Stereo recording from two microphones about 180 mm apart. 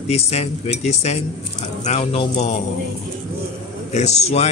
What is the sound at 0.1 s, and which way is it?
Speech, 35° left (ahead or behind).